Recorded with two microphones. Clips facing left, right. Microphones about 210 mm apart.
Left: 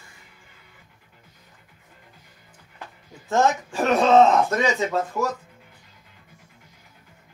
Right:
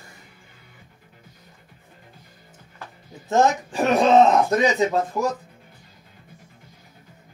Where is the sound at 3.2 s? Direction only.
20° right (ahead or behind).